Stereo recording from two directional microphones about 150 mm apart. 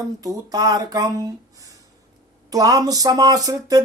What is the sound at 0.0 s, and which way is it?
Speech, 25° right (ahead or behind).